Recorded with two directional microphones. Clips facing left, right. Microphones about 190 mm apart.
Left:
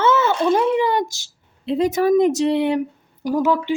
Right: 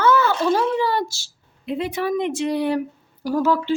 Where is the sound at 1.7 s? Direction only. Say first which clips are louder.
Left 7 dB; 40° left (ahead or behind).